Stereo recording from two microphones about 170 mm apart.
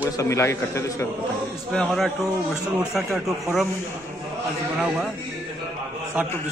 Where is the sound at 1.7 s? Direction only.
Centre (ahead or behind).